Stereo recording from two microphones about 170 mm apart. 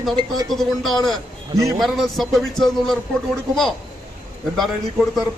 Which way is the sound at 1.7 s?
Centre (ahead or behind).